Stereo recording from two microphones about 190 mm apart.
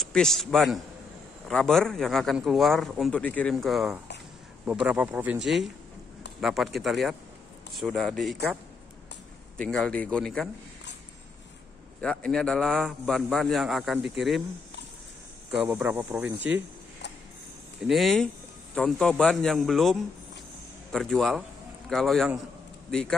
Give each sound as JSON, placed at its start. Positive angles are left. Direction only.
{"t": 0.0, "sound": "a man's voice", "side_deg": 0}
{"t": 9.6, "sound": "a man's voice", "side_deg": 5}
{"t": 12.0, "sound": "a man's voice", "side_deg": 5}
{"t": 15.7, "sound": "speech", "side_deg": -10}
{"t": 16.3, "sound": "speech", "side_deg": -70}
{"t": 17.8, "sound": "a man's voice", "side_deg": 0}